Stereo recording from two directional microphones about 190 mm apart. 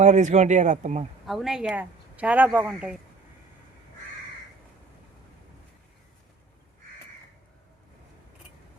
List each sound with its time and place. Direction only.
0.0 s speech: 40° right (ahead or behind)
1.3 s speech: centre (ahead or behind)